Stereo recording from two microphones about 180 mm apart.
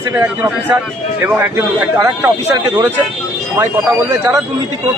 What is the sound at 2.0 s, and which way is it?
Speech, 15° right (ahead or behind).